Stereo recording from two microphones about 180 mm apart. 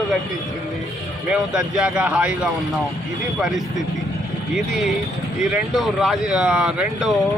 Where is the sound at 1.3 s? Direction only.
5° right (ahead or behind).